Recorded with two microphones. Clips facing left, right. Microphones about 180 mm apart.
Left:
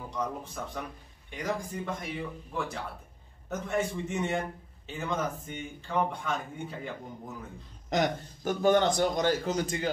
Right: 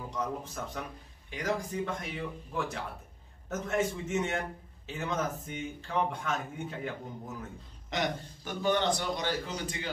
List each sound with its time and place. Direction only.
0.1 s a man's voice: centre (ahead or behind)
7.9 s a man's voice: 45° left (ahead or behind)